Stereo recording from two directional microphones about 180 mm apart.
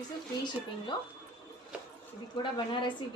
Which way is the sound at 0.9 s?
25° left (ahead or behind).